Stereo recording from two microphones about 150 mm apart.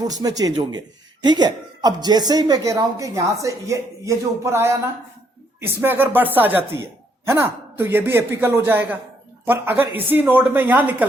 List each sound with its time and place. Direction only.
0.0 s a man's voice: 25° right (ahead or behind)